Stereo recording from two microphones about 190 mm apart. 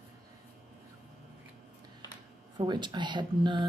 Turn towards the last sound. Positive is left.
turn(degrees=-25)  # may be behind; listen again after turning